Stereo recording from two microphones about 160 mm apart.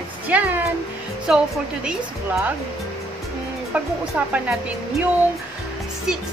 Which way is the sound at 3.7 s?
10° right (ahead or behind).